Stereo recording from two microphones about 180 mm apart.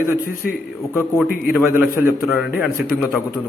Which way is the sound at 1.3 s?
55° left (ahead or behind).